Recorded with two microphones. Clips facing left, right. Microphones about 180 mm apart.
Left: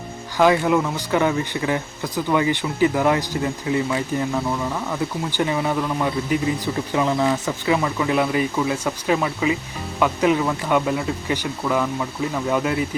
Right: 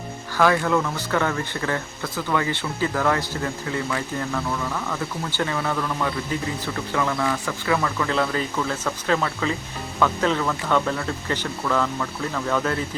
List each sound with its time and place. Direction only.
0.3 s speech: 15° left (ahead or behind)